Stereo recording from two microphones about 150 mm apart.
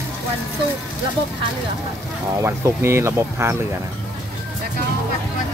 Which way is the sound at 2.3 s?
20° right (ahead or behind).